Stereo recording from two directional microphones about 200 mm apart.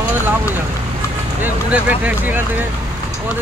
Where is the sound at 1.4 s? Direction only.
5° right (ahead or behind).